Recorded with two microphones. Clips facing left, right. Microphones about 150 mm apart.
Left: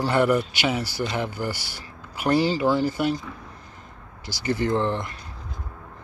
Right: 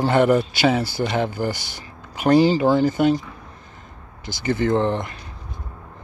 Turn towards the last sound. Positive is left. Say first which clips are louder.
# right 4 dB
turn(degrees=-20)  # may be behind; listen again after turning